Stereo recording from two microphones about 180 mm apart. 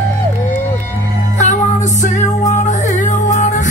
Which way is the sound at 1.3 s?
45° left (ahead or behind).